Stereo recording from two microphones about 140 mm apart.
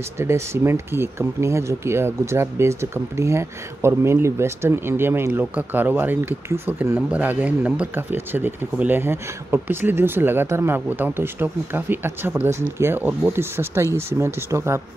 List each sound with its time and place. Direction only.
0.2 s speech: 20° right (ahead or behind)